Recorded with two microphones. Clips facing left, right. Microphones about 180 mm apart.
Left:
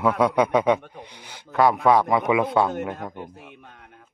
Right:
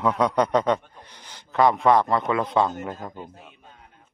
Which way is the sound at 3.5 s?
70° left (ahead or behind).